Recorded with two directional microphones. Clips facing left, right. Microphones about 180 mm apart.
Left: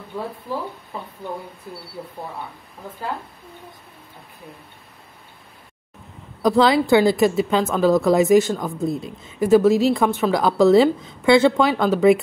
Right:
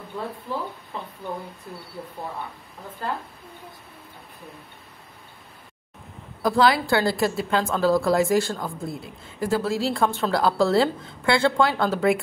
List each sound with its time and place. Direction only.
0.9 s a woman's voice: 5° left (ahead or behind)
6.4 s a woman's voice: 20° left (ahead or behind)